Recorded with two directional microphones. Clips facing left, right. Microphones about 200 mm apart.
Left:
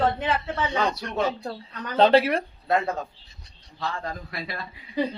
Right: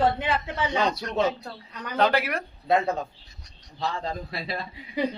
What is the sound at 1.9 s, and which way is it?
Speech, 30° left (ahead or behind).